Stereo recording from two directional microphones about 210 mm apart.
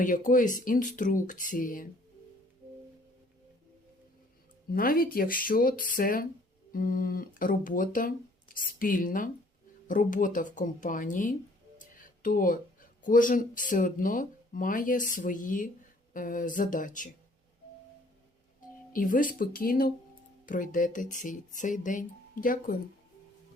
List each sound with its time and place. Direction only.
0.3 s speech: 40° left (ahead or behind)
4.7 s speech: 45° left (ahead or behind)
18.9 s speech: 40° left (ahead or behind)